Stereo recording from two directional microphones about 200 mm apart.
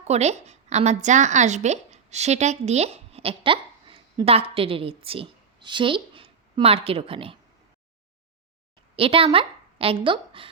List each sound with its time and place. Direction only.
0.1 s a woman's voice: 35° right (ahead or behind)
9.0 s a woman's voice: 25° right (ahead or behind)